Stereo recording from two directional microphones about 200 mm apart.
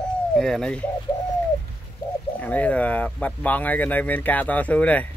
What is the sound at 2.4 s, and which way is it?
Speech, 5° left (ahead or behind).